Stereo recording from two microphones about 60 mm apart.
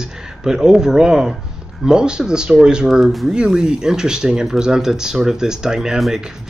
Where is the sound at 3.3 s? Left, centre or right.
Centre.